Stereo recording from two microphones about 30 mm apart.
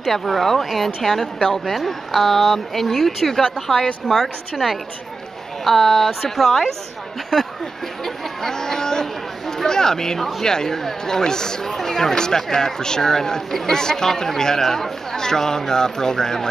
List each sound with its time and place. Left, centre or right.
0.0 s speech: centre
1.9 s speech: centre
5.6 s speech: centre
8.0 s speech: centre
11.7 s speech: centre